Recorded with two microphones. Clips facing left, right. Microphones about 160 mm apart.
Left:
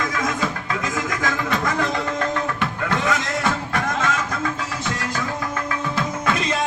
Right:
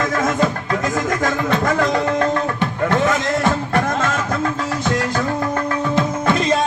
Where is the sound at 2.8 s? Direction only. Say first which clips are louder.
Right 6 dB; 45° right (ahead or behind).